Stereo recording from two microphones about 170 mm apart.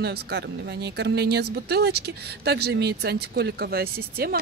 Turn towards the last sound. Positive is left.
turn(degrees=-60)  # may be behind; listen again after turning